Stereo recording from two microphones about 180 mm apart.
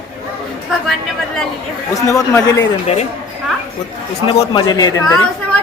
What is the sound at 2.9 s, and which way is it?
Speech, 35° left (ahead or behind).